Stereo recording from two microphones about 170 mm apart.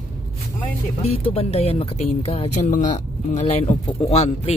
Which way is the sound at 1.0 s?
35° left (ahead or behind).